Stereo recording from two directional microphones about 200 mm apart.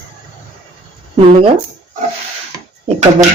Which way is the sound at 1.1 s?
25° right (ahead or behind).